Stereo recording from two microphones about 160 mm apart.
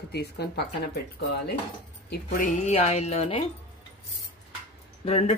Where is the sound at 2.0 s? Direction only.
65° left (ahead or behind).